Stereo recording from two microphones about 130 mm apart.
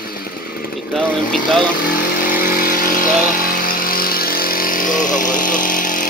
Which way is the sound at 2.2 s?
90° left.